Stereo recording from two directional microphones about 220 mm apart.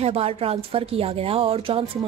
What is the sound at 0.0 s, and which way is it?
A woman's voice, 25° right (ahead or behind).